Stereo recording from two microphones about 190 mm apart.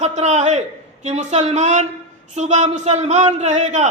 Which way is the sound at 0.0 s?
35° right (ahead or behind).